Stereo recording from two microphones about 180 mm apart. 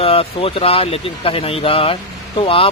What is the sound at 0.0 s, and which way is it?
Speech, 35° left (ahead or behind).